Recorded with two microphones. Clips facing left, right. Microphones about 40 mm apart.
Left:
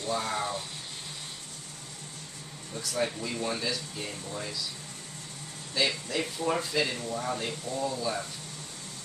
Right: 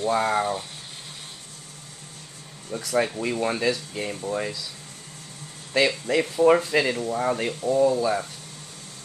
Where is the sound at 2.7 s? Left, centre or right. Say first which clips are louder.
Right 7 dB; right.